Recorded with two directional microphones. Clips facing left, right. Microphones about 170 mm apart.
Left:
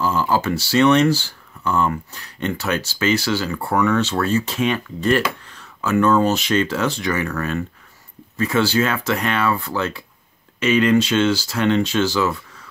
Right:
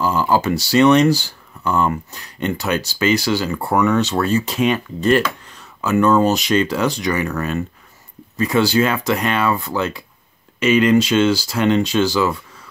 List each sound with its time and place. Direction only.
0.0 s speech: 15° right (ahead or behind)